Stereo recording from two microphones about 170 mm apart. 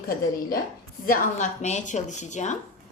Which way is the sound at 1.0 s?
50° left (ahead or behind).